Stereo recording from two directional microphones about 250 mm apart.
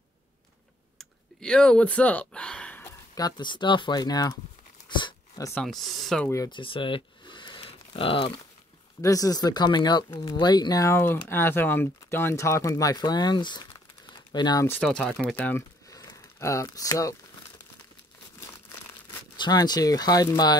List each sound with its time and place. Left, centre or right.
0.9 s speech: centre
4.8 s dog: centre
5.5 s speech: centre
19.3 s speech: centre